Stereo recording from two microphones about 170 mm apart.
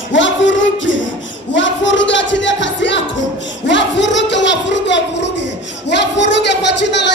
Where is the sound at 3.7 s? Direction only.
90° left.